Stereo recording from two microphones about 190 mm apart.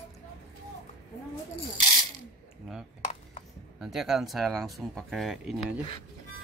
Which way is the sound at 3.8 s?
Centre (ahead or behind).